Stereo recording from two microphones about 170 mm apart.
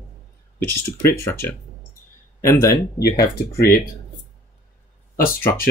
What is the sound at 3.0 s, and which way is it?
Speech, 65° left (ahead or behind).